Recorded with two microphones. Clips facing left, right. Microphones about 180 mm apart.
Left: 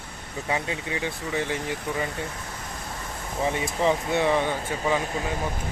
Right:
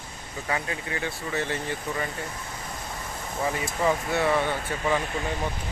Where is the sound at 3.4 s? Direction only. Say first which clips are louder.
Left 2 dB; 25° left (ahead or behind).